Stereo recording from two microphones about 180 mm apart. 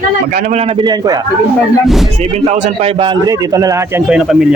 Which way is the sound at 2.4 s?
35° right (ahead or behind).